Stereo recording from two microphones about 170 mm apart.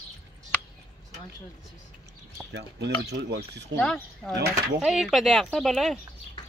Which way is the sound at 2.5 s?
80° right.